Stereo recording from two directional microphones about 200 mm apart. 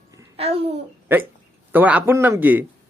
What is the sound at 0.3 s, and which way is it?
Speech, 30° right (ahead or behind).